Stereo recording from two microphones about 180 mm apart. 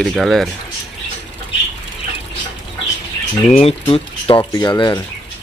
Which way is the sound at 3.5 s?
30° left (ahead or behind).